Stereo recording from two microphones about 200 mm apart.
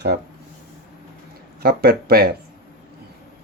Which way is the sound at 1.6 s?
50° right (ahead or behind).